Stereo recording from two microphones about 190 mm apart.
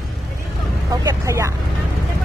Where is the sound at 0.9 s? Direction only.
20° right (ahead or behind).